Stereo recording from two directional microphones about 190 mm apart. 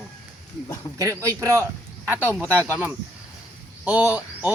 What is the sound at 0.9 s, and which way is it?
Speech, 15° right (ahead or behind).